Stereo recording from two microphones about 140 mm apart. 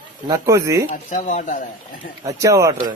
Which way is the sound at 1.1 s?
70° left (ahead or behind).